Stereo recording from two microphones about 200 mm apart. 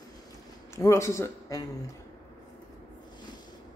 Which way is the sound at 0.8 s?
15° left (ahead or behind).